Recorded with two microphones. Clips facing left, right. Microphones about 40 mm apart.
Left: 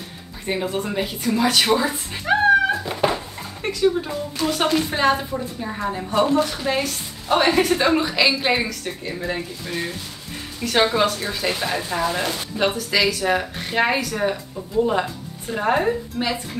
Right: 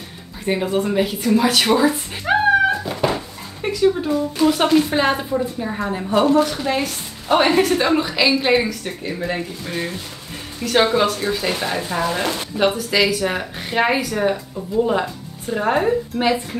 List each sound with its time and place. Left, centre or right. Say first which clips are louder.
0.5 s speech: right 4 dB; centre
5.9 s speech: right 2 dB; centre
6.5 s speech: right 2 dB; centre
8.8 s speech: right 2 dB; centre